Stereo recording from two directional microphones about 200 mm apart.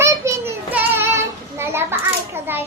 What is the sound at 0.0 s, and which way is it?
Child singing, 15° right (ahead or behind).